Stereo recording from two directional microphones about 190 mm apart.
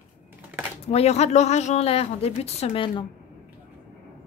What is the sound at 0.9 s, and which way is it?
Speech, 35° left (ahead or behind).